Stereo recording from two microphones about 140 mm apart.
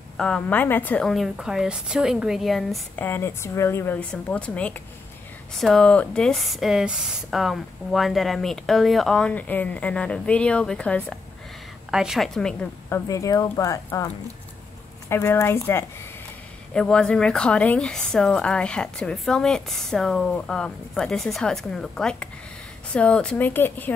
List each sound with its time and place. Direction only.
0.2 s speech: 10° left (ahead or behind)
3.0 s a woman's voice: 15° left (ahead or behind)
11.9 s speech: 5° right (ahead or behind)
12.9 s speech: 20° left (ahead or behind)
16.7 s a woman's voice: 5° left (ahead or behind)